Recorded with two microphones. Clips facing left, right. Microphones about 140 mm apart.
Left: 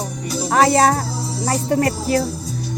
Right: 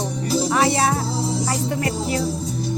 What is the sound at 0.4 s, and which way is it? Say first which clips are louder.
Music: left 7 dB; 45° left (ahead or behind).